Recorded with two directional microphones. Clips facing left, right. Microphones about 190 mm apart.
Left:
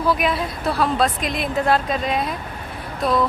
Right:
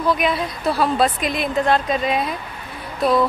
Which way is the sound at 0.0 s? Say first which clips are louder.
Right 1 dB; 5° left (ahead or behind).